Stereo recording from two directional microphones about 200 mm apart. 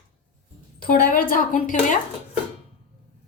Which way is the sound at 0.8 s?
45° left (ahead or behind).